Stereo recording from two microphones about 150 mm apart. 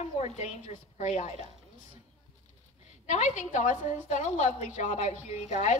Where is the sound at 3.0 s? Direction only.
50° left (ahead or behind).